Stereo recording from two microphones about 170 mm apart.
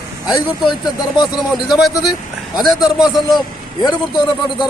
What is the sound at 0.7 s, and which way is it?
Speech, 25° left (ahead or behind).